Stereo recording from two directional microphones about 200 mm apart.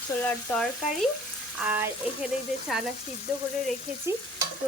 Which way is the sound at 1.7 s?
10° right (ahead or behind).